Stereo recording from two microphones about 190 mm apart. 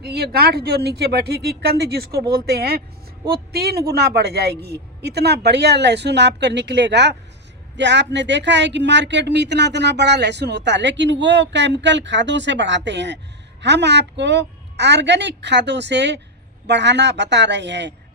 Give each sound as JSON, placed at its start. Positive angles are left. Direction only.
{"t": 0.0, "sound": "speech", "side_deg": -55}